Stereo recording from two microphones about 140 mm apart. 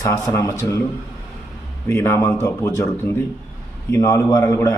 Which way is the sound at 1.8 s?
20° left (ahead or behind).